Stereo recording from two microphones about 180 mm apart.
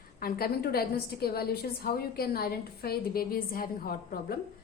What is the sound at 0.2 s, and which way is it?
A woman's voice, 55° left (ahead or behind).